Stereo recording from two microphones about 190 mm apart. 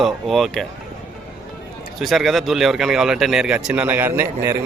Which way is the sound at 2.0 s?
Centre (ahead or behind).